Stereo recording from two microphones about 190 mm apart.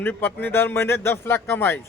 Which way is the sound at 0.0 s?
10° left (ahead or behind).